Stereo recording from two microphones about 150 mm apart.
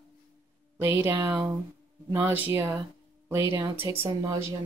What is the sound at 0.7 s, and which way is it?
Speech, 15° right (ahead or behind).